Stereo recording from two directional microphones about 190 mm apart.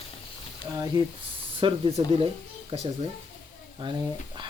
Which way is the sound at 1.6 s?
30° right (ahead or behind).